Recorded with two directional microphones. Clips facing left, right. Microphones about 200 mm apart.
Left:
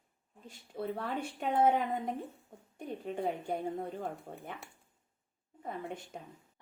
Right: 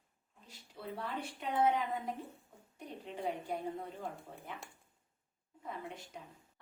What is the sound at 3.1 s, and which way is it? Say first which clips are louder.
A woman's voice: left 3 dB; 50° left (ahead or behind).